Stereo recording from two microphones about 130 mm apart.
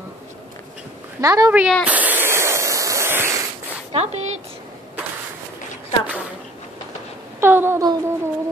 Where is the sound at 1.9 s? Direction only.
10° right (ahead or behind).